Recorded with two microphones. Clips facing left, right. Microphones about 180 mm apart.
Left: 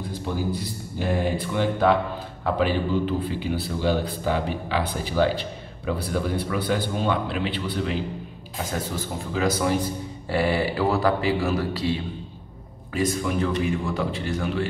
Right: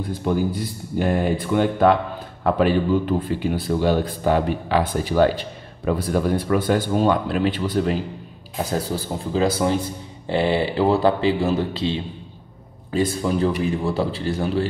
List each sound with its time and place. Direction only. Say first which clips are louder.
0.9 s a man's voice: right 4 dB; 50° right (ahead or behind); by 14.7 s 30° right (ahead or behind)